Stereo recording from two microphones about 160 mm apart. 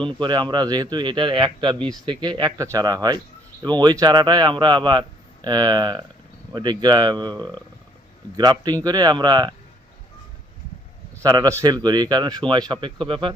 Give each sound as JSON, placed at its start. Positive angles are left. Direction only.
{"t": 0.0, "sound": "a man's voice", "side_deg": -30}
{"t": 7.3, "sound": "speech", "side_deg": 10}
{"t": 8.4, "sound": "a man's voice", "side_deg": -25}
{"t": 11.2, "sound": "a man's voice", "side_deg": -25}